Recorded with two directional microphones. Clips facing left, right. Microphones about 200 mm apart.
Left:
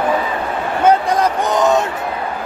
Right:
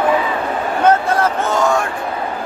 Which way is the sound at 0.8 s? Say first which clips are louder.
Left 1 dB; 15° left (ahead or behind).